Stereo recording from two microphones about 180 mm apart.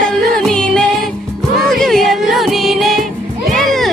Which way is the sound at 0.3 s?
5° left (ahead or behind).